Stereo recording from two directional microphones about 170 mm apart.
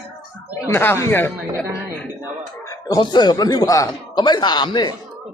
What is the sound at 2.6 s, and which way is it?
Speech, 25° left (ahead or behind).